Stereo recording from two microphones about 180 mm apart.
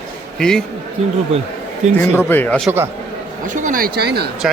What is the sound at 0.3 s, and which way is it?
Speech, 5° left (ahead or behind).